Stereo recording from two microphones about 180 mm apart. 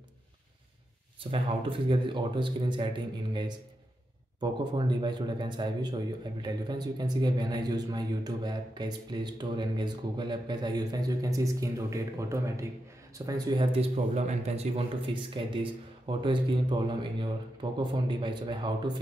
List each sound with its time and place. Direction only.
1.3 s speech: 30° right (ahead or behind)